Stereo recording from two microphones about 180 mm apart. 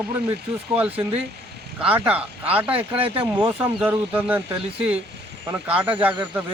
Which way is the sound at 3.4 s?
10° right (ahead or behind).